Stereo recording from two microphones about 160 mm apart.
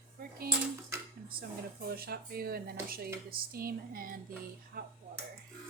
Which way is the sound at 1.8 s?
75° right (ahead or behind).